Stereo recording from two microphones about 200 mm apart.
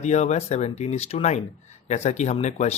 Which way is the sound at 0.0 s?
35° left (ahead or behind).